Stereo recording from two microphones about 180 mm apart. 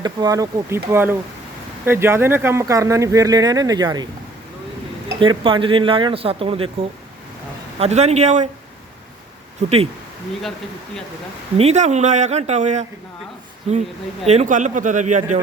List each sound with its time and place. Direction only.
0.0 s speech: 20° right (ahead or behind)
5.2 s speech: 30° right (ahead or behind)
7.8 s speech: 35° right (ahead or behind)
9.6 s speech: 35° right (ahead or behind)
11.5 s speech: 35° right (ahead or behind)